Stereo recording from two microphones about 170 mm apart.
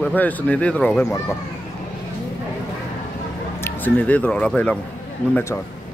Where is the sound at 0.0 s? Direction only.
10° left (ahead or behind).